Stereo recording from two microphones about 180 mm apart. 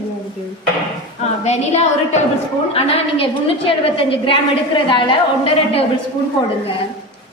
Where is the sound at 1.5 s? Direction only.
35° left (ahead or behind).